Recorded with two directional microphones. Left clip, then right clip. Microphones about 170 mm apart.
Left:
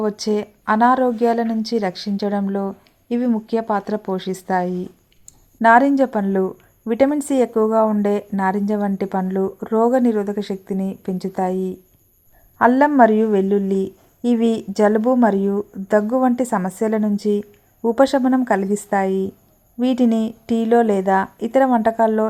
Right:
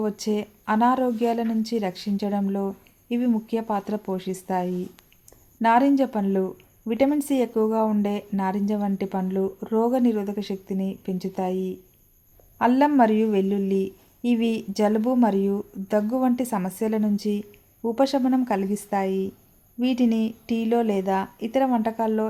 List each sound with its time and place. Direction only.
0.0 s speech: 15° left (ahead or behind)
12.5 s speech: 20° left (ahead or behind)